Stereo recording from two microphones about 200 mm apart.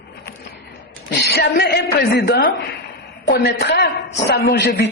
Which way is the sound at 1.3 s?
50° left (ahead or behind).